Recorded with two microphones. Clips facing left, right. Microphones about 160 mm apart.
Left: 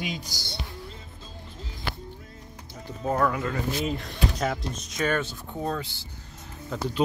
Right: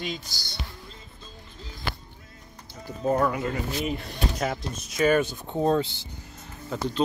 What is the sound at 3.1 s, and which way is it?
Speech, 30° right (ahead or behind).